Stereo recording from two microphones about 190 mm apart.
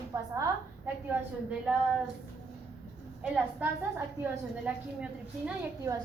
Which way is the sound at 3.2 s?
10° right (ahead or behind).